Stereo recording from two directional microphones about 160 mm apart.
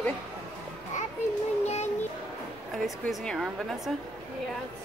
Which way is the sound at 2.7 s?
Centre (ahead or behind).